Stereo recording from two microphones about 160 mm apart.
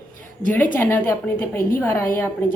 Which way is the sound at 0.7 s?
10° left (ahead or behind).